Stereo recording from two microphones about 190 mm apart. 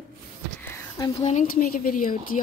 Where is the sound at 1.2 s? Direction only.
40° left (ahead or behind).